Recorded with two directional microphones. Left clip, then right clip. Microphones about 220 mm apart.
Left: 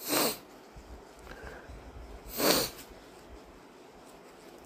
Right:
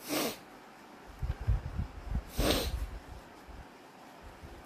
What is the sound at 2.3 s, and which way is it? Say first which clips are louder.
Snort: left 4 dB; 15° left (ahead or behind).